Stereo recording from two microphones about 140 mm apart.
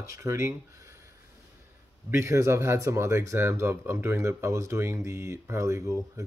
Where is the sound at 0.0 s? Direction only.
20° right (ahead or behind).